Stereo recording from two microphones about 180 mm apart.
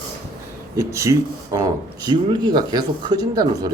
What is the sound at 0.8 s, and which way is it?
Speech, 15° right (ahead or behind).